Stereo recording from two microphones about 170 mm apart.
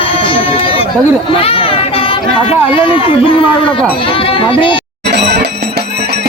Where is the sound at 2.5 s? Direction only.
30° left (ahead or behind).